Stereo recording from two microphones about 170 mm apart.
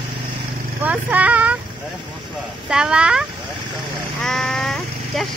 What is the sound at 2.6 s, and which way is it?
Speech, 5° right (ahead or behind).